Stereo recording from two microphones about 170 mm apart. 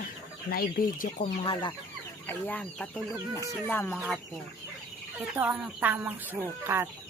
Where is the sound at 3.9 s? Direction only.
Centre (ahead or behind).